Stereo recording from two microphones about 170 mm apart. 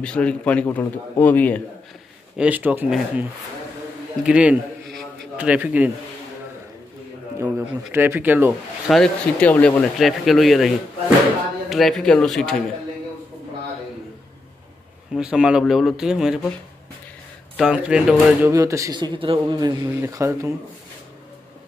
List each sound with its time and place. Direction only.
0.0 s speech: 5° left (ahead or behind)
2.3 s speech: 10° right (ahead or behind)
7.3 s speech: 15° right (ahead or behind)
8.8 s speech: centre (ahead or behind)
11.7 s speech: centre (ahead or behind)
15.1 s speech: 5° right (ahead or behind)
17.6 s speech: 5° right (ahead or behind); by 19.7 s 30° right (ahead or behind)
19.8 s speech: 20° right (ahead or behind)